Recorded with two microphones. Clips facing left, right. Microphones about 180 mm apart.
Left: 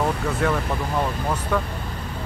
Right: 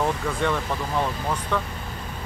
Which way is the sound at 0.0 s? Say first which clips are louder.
Left 2 dB; 5° left (ahead or behind).